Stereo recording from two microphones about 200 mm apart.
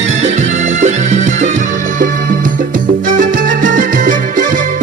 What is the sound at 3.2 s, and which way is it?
Music, 40° right (ahead or behind).